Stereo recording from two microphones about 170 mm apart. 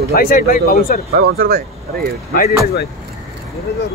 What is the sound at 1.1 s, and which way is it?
Speech, 65° right (ahead or behind).